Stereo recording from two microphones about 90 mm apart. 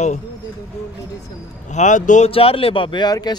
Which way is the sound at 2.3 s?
90° left.